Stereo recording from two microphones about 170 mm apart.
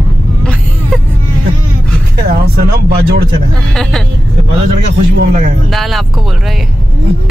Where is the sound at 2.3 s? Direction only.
60° right (ahead or behind).